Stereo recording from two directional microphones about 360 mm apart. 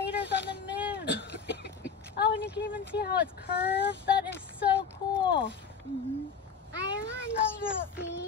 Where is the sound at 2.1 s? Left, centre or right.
Left.